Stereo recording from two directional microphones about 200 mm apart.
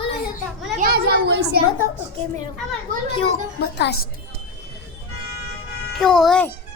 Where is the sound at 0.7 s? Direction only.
45° right (ahead or behind).